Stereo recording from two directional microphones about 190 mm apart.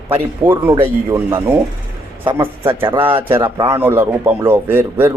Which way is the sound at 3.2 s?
10° right (ahead or behind).